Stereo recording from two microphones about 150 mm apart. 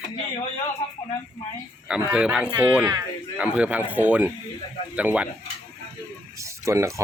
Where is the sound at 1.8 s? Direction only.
5° right (ahead or behind).